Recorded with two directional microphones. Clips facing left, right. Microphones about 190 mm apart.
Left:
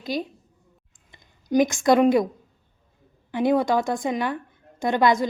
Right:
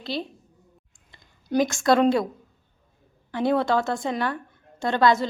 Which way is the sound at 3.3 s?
15° left (ahead or behind).